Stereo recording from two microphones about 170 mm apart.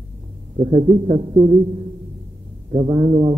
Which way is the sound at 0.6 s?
25° right (ahead or behind).